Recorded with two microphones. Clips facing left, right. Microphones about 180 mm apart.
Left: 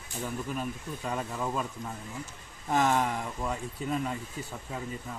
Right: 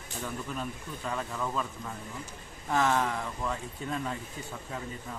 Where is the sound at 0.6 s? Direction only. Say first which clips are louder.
Left 2 dB; 15° left (ahead or behind).